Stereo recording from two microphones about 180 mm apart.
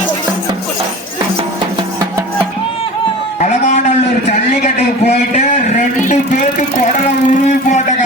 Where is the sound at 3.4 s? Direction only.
40° left (ahead or behind).